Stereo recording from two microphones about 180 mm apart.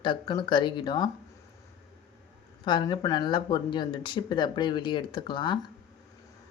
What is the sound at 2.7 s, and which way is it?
Speech, 25° left (ahead or behind).